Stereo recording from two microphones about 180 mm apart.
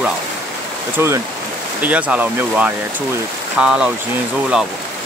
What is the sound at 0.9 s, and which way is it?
Speech, 15° right (ahead or behind).